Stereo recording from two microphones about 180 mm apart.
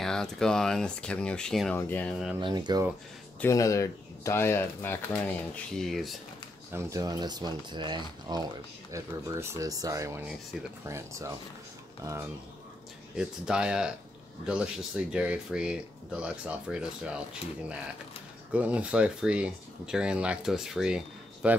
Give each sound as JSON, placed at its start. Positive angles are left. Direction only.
{"t": 0.0, "sound": "speech", "side_deg": 5}
{"t": 2.4, "sound": "speech", "side_deg": -25}
{"t": 3.3, "sound": "speech", "side_deg": 15}
{"t": 6.7, "sound": "speech", "side_deg": -20}
{"t": 13.1, "sound": "speech", "side_deg": -5}